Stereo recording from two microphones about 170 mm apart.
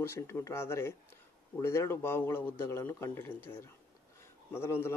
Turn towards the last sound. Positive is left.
turn(degrees=15)  # may be behind; listen again after turning